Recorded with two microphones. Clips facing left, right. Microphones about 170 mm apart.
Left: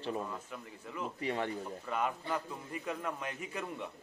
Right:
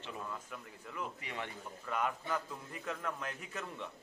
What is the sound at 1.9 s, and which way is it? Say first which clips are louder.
A man's voice: left 1 dB; centre (ahead or behind).